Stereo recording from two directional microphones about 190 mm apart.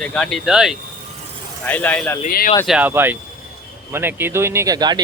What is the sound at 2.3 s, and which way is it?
Speech, 50° left (ahead or behind).